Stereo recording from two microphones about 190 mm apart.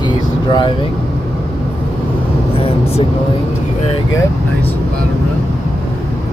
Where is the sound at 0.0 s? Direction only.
25° left (ahead or behind).